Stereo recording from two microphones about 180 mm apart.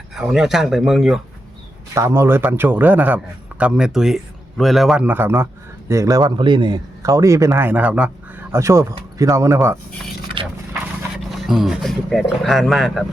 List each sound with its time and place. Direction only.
0.1 s speech: centre (ahead or behind)
2.0 s a man's voice: 15° right (ahead or behind)
10.4 s speech: 25° right (ahead or behind)
11.4 s speech: centre (ahead or behind)